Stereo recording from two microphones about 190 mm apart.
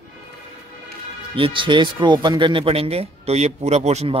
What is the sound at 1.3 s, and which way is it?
Speech, 25° right (ahead or behind).